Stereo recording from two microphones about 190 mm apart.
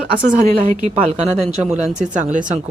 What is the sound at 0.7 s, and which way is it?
Speech, 40° right (ahead or behind).